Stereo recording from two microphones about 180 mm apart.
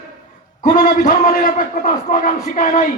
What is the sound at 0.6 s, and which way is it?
Speech, 45° left (ahead or behind).